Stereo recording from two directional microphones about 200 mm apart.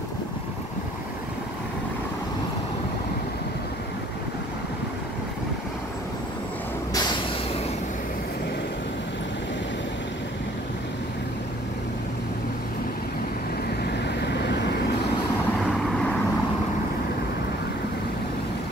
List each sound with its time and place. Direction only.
6.9 s vehicle: 20° left (ahead or behind)
14.2 s vehicle: 55° left (ahead or behind)